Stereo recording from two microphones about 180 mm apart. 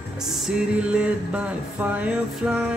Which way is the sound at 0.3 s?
5° right (ahead or behind).